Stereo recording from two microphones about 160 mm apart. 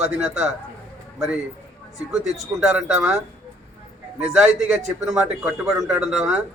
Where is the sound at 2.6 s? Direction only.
5° right (ahead or behind).